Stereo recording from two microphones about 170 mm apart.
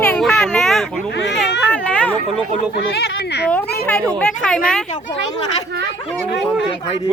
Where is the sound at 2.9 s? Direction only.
75° left (ahead or behind).